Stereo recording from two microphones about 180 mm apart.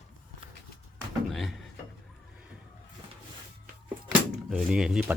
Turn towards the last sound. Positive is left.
turn(degrees=-5)  # may be behind; listen again after turning